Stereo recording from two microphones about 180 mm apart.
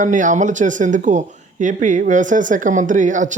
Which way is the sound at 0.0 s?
45° right (ahead or behind).